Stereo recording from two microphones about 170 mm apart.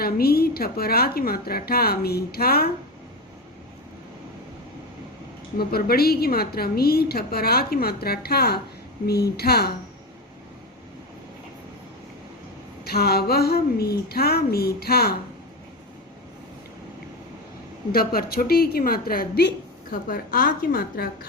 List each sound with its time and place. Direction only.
0.0 s a woman's voice: 65° left (ahead or behind)
5.5 s a woman's voice: 65° left (ahead or behind)
12.8 s a woman's voice: 65° left (ahead or behind)
17.9 s a woman's voice: 60° left (ahead or behind)